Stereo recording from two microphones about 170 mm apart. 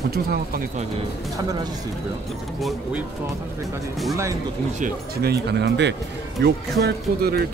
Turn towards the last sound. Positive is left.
turn(degrees=-65)  # may be behind; listen again after turning